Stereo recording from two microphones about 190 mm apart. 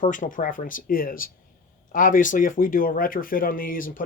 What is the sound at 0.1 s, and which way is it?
Speech, 45° left (ahead or behind).